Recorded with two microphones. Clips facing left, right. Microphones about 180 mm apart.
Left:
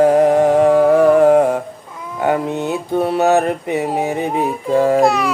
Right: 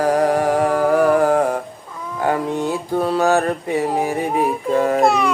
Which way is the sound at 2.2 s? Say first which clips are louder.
Left 2 dB; 20° left (ahead or behind).